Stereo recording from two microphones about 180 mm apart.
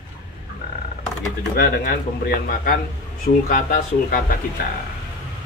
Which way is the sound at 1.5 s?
55° left (ahead or behind).